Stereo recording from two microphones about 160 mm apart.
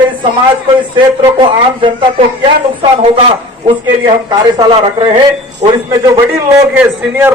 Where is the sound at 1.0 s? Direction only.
30° right (ahead or behind).